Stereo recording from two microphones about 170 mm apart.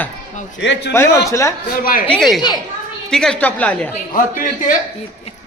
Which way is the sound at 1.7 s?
55° left (ahead or behind).